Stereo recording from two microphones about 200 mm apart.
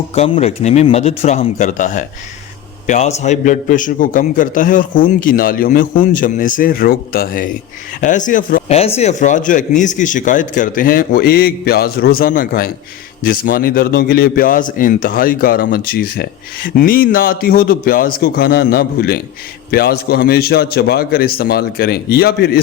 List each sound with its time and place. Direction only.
0.1 s a man's voice: 30° left (ahead or behind); by 22.6 s 50° left (ahead or behind)